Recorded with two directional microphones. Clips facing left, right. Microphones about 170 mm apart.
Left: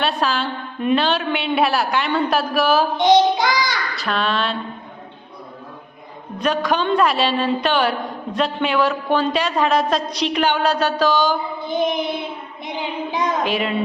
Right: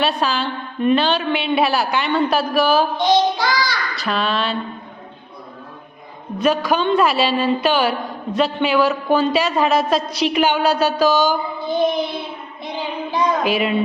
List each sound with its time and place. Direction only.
0.0 s a woman's voice: centre (ahead or behind)
3.0 s child singing: 20° left (ahead or behind)
3.9 s a woman's voice: centre (ahead or behind)
6.4 s a woman's voice: 5° right (ahead or behind)
11.7 s child singing: 20° left (ahead or behind)
13.4 s child singing: 5° right (ahead or behind)